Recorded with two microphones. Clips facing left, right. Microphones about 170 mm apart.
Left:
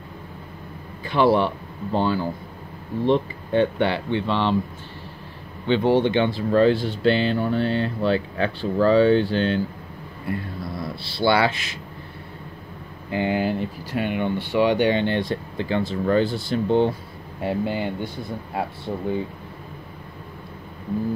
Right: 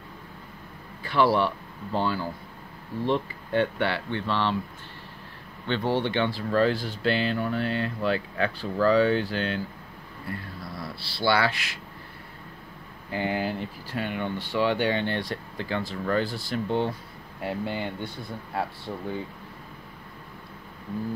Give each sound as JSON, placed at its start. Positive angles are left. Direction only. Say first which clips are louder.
{"t": 1.0, "sound": "speech", "louder": "left 4 dB", "side_deg": 20}
{"t": 5.8, "sound": "speech", "louder": "left 6 dB", "side_deg": 20}
{"t": 10.8, "sound": "speech", "louder": "left 6 dB", "side_deg": 25}
{"t": 13.1, "sound": "speech", "louder": "left 5 dB", "side_deg": 20}